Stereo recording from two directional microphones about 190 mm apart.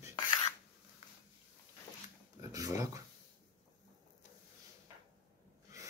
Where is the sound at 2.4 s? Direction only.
20° right (ahead or behind).